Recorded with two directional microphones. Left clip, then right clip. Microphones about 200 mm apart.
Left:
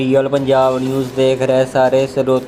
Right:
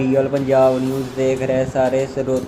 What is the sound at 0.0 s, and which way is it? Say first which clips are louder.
Speech: left 4 dB; 15° left (ahead or behind).